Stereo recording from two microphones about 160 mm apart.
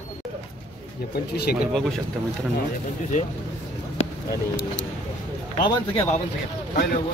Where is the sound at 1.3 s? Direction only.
80° left.